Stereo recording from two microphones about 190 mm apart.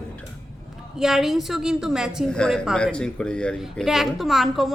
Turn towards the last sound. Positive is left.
turn(degrees=0)  # may be behind; listen again after turning